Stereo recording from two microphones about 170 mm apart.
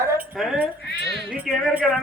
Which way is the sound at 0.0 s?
15° right (ahead or behind).